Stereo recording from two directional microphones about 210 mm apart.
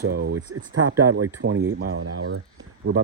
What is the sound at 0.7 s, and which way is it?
Speech, 70° right (ahead or behind).